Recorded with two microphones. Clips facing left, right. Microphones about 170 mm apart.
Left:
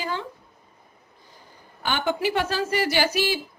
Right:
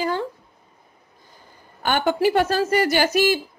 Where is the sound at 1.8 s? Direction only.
50° right (ahead or behind).